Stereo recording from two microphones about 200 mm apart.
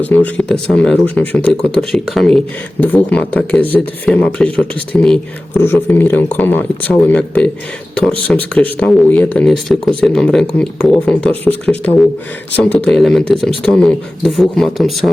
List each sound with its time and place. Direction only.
0.0 s speech: 5° left (ahead or behind)